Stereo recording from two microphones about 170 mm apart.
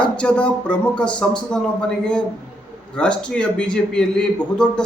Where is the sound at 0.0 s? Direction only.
5° left (ahead or behind).